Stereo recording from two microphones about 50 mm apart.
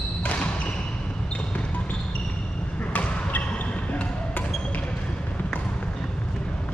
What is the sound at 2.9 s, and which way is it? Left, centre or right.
Basketball bounce, left.